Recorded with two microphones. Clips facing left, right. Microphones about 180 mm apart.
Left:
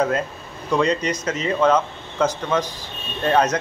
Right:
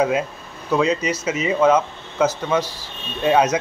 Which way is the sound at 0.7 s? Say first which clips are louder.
Right 1 dB; 5° right (ahead or behind).